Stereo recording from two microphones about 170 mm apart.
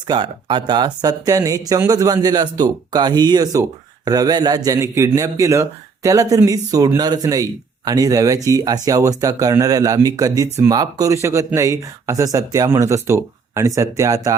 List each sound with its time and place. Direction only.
0.1 s speech: 30° right (ahead or behind)